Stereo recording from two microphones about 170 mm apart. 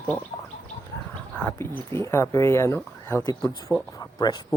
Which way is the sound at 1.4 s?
15° left (ahead or behind).